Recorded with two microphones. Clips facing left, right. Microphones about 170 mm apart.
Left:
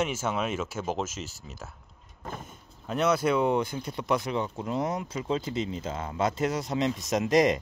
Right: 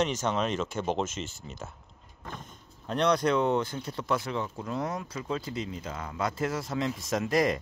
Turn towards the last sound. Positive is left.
turn(degrees=20)  # may be behind; listen again after turning